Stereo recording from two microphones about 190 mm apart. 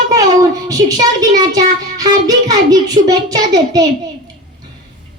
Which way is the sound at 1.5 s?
20° right (ahead or behind).